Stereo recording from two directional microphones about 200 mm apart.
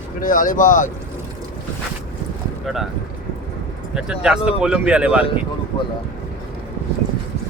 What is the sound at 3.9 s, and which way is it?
Speech, 5° right (ahead or behind).